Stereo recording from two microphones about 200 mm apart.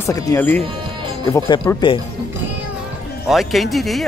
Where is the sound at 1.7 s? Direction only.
15° left (ahead or behind).